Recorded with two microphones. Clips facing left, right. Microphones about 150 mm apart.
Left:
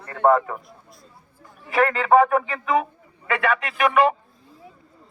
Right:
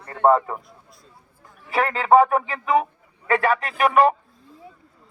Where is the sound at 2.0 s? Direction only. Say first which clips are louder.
Right 3 dB; 30° right (ahead or behind).